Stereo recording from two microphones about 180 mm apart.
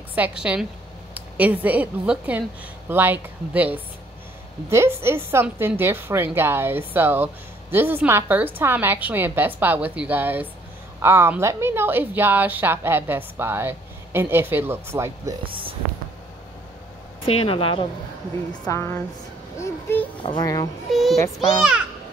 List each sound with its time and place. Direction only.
0.1 s a woman's voice: 5° right (ahead or behind)
15.4 s speech: 30° right (ahead or behind)
17.3 s a woman's voice: 30° left (ahead or behind)
18.7 s a child's voice: 15° left (ahead or behind)
20.2 s a child's voice: 20° left (ahead or behind)
20.9 s a woman's voice: centre (ahead or behind)
21.2 s a child's voice: 25° left (ahead or behind)